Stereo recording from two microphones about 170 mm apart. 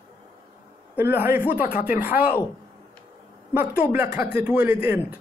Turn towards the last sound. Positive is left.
turn(degrees=-10)  # may be behind; listen again after turning